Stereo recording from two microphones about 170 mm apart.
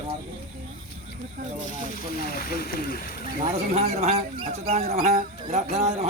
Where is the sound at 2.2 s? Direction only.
60° left (ahead or behind).